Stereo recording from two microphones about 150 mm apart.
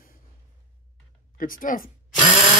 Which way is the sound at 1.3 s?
65° left (ahead or behind).